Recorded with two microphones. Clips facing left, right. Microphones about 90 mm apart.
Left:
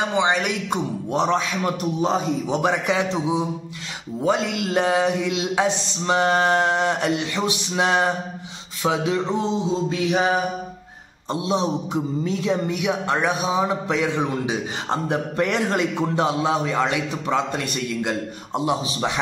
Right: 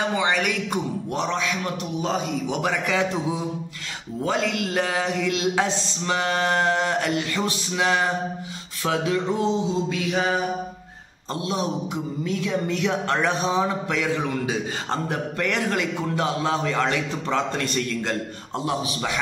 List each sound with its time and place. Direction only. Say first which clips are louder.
0.0 s a man's voice: left 2 dB; 20° left (ahead or behind)
1.2 s a man's voice: left 5 dB; 35° left (ahead or behind)
12.6 s a sound: left 1 dB; 15° left (ahead or behind)
13.8 s a man's voice: left 2 dB; 25° left (ahead or behind)
18.7 s a man's voice: left 2 dB; 25° left (ahead or behind)